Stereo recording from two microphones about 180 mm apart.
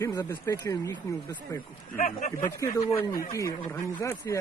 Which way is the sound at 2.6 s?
15° left (ahead or behind).